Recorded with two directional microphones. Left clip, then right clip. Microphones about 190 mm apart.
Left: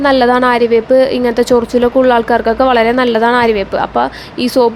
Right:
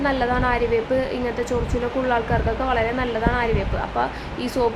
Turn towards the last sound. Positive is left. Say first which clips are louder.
# left 11 dB
turn(degrees=45)  # may be behind; listen again after turning